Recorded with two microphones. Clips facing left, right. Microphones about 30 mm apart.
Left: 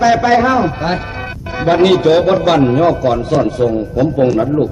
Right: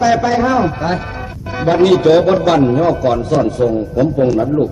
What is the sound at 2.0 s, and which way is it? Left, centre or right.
A man's voice, centre.